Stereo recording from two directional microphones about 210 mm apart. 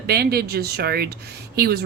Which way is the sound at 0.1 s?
50° right (ahead or behind).